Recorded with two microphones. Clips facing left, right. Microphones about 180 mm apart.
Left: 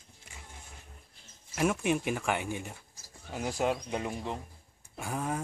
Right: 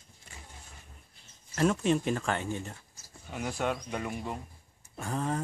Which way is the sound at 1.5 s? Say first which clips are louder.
Right 2 dB; 10° left (ahead or behind).